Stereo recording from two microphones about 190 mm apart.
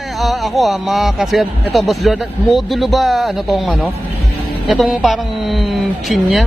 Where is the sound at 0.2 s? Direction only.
Centre (ahead or behind).